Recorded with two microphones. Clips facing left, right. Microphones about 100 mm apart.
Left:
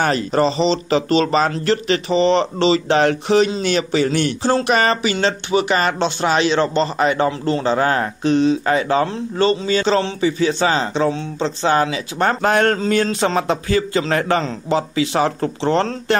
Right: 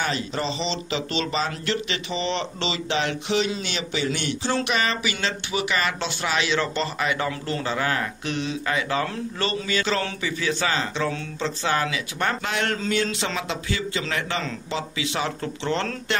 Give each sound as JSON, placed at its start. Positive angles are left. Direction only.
{"t": 0.0, "sound": "speech", "side_deg": 50}